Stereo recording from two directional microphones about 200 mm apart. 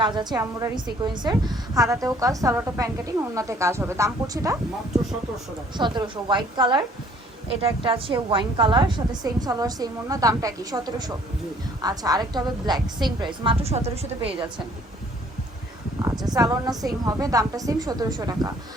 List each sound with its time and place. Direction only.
0.0 s a woman's voice: 20° right (ahead or behind)
5.7 s a woman's voice: 20° right (ahead or behind)
16.2 s a woman's voice: 20° right (ahead or behind)